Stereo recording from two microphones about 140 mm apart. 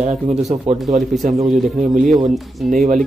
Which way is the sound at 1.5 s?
60° right (ahead or behind).